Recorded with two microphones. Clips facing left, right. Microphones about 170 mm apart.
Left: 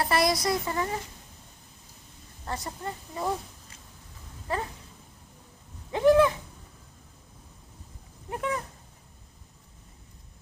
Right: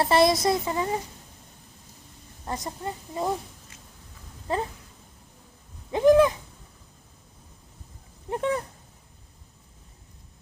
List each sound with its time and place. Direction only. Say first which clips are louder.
0.0 s speech: right 5 dB; 25° right (ahead or behind)
2.5 s speech: right 2 dB; 20° right (ahead or behind)
4.5 s speech: right 3 dB; 20° right (ahead or behind)
5.9 s owl: right 2 dB; 20° right (ahead or behind)
8.3 s a sound: right 5 dB; 30° right (ahead or behind)